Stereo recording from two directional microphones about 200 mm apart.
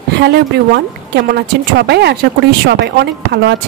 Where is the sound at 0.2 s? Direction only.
60° right (ahead or behind).